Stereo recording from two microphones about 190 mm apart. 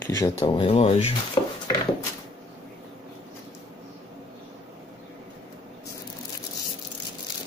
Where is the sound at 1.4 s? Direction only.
25° left (ahead or behind).